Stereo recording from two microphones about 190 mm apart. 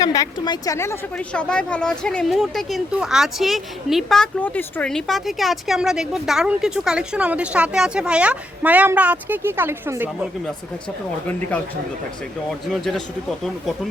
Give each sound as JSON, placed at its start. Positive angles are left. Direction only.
{"t": 0.0, "sound": "a woman's voice", "side_deg": 20}
{"t": 12.6, "sound": "a woman's voice", "side_deg": 0}